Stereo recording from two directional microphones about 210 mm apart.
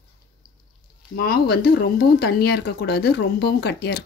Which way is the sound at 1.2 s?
45° left (ahead or behind).